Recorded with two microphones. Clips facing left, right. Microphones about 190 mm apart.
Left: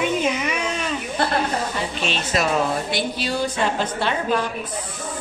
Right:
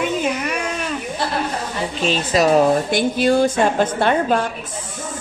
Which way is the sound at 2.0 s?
35° right (ahead or behind).